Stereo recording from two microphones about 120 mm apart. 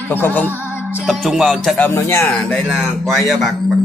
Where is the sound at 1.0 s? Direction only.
Centre (ahead or behind).